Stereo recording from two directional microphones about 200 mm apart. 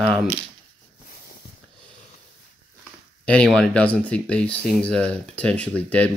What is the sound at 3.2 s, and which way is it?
Speech, 5° left (ahead or behind).